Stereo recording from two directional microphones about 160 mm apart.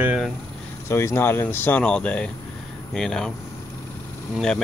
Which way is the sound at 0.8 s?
15° left (ahead or behind).